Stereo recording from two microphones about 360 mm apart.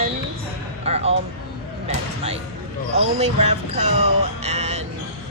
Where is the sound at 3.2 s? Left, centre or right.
Centre.